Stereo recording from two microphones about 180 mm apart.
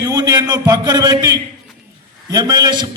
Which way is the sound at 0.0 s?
20° right (ahead or behind).